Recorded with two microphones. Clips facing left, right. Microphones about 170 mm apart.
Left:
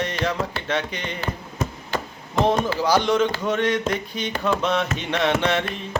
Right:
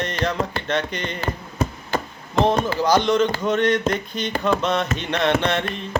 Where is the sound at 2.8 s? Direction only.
10° left (ahead or behind).